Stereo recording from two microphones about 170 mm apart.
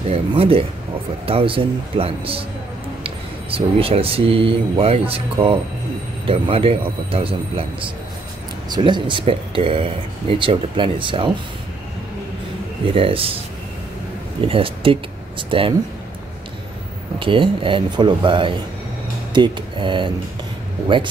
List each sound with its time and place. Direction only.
0.1 s a man's voice: 35° right (ahead or behind)
8.6 s speech: 25° right (ahead or behind)
12.9 s a man's voice: 35° right (ahead or behind)
14.4 s speech: 30° right (ahead or behind)
17.2 s speech: 30° right (ahead or behind)